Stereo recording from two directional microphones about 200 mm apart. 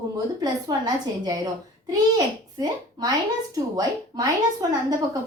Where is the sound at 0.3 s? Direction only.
20° right (ahead or behind).